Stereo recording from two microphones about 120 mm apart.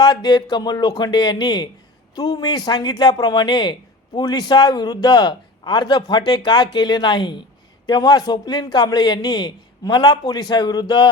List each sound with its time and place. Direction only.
0.0 s speech: 35° left (ahead or behind)